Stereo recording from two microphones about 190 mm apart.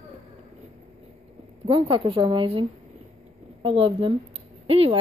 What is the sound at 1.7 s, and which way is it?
Speech, 25° right (ahead or behind).